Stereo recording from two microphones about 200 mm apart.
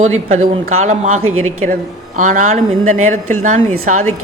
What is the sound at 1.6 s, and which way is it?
A man's voice, 40° right (ahead or behind).